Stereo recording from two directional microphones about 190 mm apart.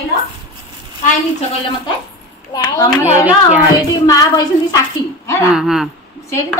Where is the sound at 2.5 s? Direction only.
20° left (ahead or behind).